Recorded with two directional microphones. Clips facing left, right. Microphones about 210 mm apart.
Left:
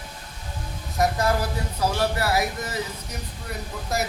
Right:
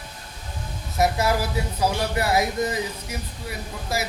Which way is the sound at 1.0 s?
10° right (ahead or behind).